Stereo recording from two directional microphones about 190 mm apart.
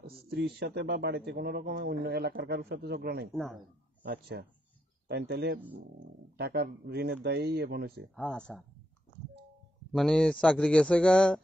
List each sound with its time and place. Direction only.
0.0 s speech: 55° right (ahead or behind)
3.3 s speech: centre (ahead or behind)
4.0 s speech: 60° right (ahead or behind)
8.2 s speech: 5° left (ahead or behind)
9.9 s speech: centre (ahead or behind)